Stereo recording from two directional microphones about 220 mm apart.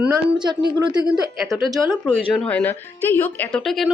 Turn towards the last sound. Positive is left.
turn(degrees=0)  # may be behind; listen again after turning